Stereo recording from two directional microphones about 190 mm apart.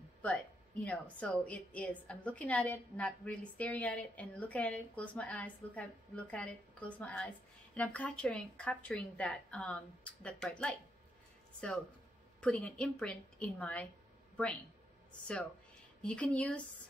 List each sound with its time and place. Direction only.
0.8 s a woman's voice: 5° left (ahead or behind)
16.0 s a woman's voice: 5° left (ahead or behind)